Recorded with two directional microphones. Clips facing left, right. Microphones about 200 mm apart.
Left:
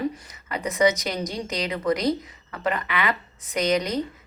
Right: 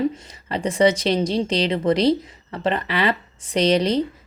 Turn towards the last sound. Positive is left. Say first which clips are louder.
# right 5 dB
turn(degrees=-30)  # may be behind; listen again after turning